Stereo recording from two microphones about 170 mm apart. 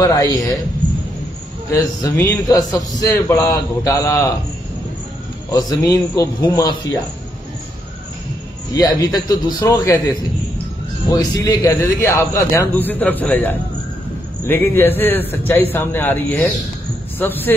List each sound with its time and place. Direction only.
0.0 s a man's voice: 20° left (ahead or behind)
1.7 s a man's voice: 20° left (ahead or behind)
5.5 s a man's voice: 20° left (ahead or behind)
8.7 s a man's voice: 25° left (ahead or behind)